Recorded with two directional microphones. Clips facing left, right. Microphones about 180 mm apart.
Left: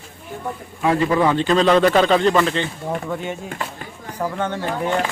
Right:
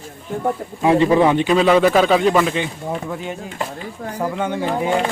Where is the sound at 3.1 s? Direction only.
Centre (ahead or behind).